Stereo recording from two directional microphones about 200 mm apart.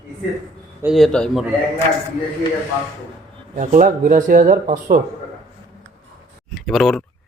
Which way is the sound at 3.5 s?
40° right (ahead or behind).